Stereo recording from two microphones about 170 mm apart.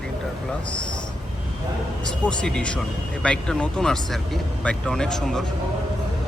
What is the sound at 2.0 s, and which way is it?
Speech, 5° left (ahead or behind).